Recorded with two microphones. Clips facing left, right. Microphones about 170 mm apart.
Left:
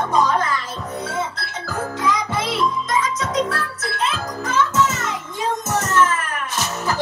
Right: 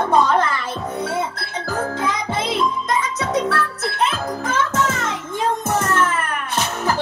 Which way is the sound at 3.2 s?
60° right (ahead or behind).